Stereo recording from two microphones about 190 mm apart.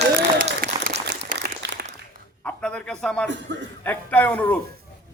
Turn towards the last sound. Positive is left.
turn(degrees=10)  # may be behind; listen again after turning